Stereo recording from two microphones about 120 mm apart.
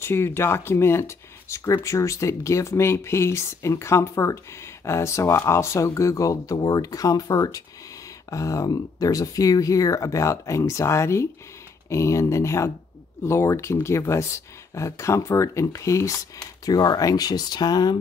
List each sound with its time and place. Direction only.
0.0 s speech: 20° left (ahead or behind)